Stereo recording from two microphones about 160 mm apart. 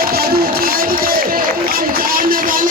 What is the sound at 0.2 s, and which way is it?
Music, 65° right (ahead or behind).